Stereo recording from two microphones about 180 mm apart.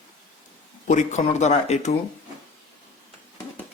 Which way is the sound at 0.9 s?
40° left (ahead or behind).